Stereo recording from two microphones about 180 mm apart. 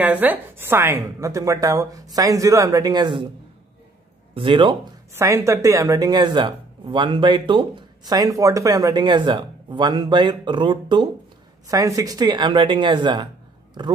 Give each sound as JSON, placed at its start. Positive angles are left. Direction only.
{"t": 0.0, "sound": "a woman's voice", "side_deg": -10}
{"t": 4.3, "sound": "speech", "side_deg": -30}
{"t": 5.1, "sound": "speech", "side_deg": -15}